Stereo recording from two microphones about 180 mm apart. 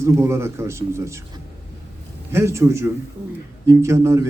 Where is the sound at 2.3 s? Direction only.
15° right (ahead or behind).